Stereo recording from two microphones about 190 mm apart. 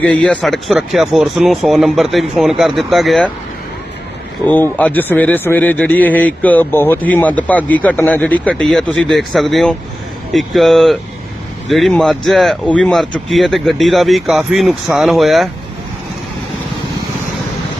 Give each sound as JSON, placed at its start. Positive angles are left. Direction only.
{"t": 0.0, "sound": "a man's voice", "side_deg": 5}
{"t": 4.4, "sound": "a man's voice", "side_deg": 10}